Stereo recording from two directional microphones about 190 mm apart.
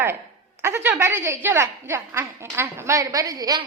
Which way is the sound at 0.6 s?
10° right (ahead or behind).